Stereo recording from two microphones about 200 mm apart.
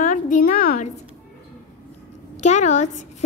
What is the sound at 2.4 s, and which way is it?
Speech, 35° left (ahead or behind).